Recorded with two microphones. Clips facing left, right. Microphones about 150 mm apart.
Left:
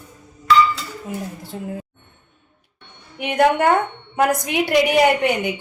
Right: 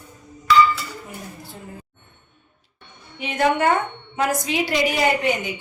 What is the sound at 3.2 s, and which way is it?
A woman's voice, 60° left (ahead or behind).